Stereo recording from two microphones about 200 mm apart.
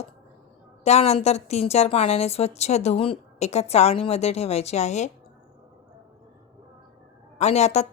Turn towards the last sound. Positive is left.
turn(degrees=35)  # may be behind; listen again after turning